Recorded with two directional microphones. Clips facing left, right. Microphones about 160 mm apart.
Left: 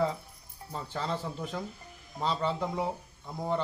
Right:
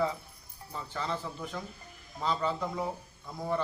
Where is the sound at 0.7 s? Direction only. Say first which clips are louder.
Left 1 dB; 35° left (ahead or behind).